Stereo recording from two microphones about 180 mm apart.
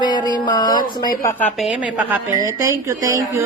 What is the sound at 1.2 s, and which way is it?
A woman's voice, 10° left (ahead or behind).